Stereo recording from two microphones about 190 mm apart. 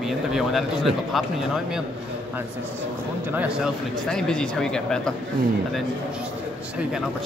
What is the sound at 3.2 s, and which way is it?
Speech, 10° right (ahead or behind).